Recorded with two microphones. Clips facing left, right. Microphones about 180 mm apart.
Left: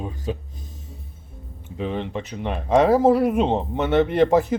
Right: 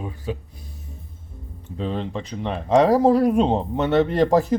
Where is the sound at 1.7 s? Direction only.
10° left (ahead or behind).